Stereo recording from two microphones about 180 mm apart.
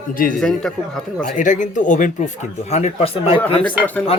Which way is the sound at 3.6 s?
10° left (ahead or behind).